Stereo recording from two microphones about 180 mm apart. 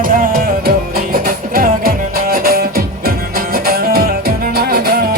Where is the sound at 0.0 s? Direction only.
50° right (ahead or behind).